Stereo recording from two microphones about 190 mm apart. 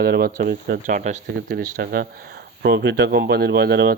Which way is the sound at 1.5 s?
55° right (ahead or behind).